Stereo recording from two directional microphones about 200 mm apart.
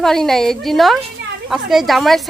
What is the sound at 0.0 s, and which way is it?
Speech, centre (ahead or behind).